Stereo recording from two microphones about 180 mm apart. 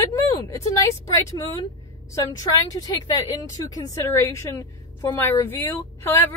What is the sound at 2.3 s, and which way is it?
A woman's voice, 20° left (ahead or behind).